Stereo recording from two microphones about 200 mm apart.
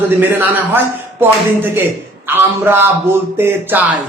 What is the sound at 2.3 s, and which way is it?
A man's voice, 10° right (ahead or behind).